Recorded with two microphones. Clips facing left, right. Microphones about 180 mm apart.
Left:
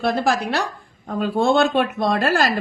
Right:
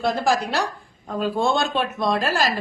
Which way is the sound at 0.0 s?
60° left (ahead or behind).